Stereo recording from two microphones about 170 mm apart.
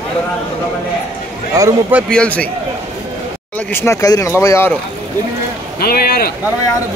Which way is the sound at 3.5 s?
15° left (ahead or behind).